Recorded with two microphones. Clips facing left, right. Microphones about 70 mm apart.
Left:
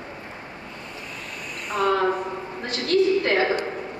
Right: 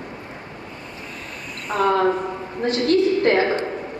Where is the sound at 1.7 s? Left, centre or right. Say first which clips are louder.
Right 3 dB; right.